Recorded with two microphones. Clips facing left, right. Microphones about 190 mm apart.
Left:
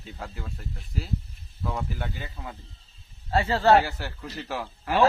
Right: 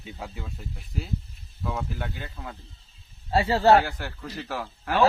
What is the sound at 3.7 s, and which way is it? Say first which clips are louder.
A man's voice: even; 5° left (ahead or behind).